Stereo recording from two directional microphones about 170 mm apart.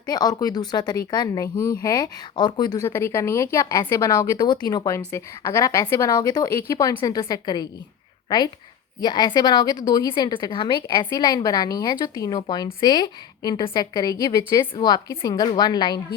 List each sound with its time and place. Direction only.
0.0 s a woman's voice: 25° left (ahead or behind)
9.0 s a woman's voice: 25° left (ahead or behind)